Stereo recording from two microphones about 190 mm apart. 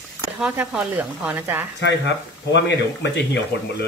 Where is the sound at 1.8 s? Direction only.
70° left (ahead or behind).